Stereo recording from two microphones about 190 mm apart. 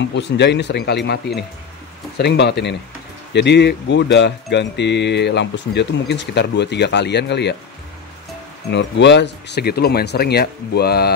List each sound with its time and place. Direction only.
0.1 s speech: 65° left (ahead or behind)
8.6 s speech: 65° left (ahead or behind)